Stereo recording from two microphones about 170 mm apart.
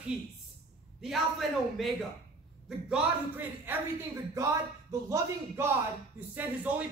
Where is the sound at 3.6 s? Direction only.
20° right (ahead or behind).